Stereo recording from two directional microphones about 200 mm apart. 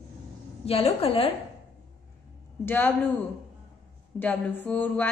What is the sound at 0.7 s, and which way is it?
Speech, 30° left (ahead or behind).